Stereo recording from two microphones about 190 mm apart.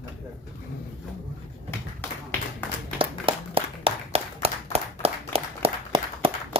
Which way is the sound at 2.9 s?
30° right (ahead or behind).